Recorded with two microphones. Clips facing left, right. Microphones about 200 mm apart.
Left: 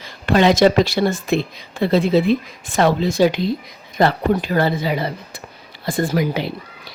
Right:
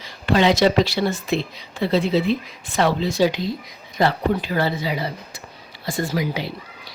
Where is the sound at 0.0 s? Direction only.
50° left (ahead or behind).